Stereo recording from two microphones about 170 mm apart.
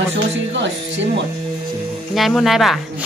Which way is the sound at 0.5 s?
90° right.